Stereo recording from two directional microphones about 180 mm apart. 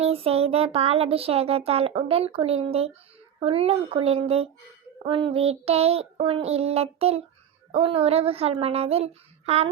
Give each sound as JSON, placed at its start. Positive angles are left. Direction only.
{"t": 0.0, "sound": "child singing", "side_deg": -35}